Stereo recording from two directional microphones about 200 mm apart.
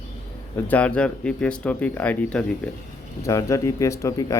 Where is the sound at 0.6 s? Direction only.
5° left (ahead or behind).